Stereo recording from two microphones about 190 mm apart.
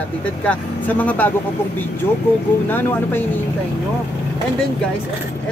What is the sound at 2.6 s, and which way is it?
Speech, 10° left (ahead or behind).